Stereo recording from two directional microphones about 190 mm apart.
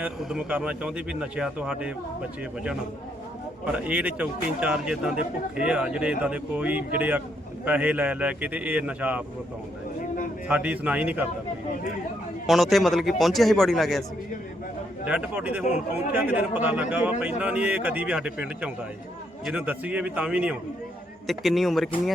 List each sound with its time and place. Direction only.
0.0 s speech: 5° right (ahead or behind)
3.7 s a man's voice: 5° right (ahead or behind)
10.5 s a man's voice: 5° right (ahead or behind)
12.5 s speech: centre (ahead or behind)
15.0 s a man's voice: 5° right (ahead or behind)